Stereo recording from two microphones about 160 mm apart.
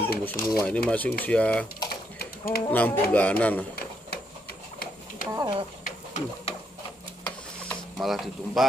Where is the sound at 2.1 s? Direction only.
70° left (ahead or behind).